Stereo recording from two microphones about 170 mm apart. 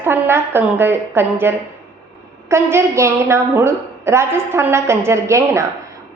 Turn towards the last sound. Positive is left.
turn(degrees=-15)  # may be behind; listen again after turning